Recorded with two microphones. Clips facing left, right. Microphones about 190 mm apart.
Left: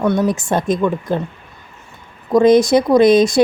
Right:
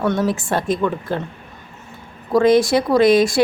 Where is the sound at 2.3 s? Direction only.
20° left (ahead or behind).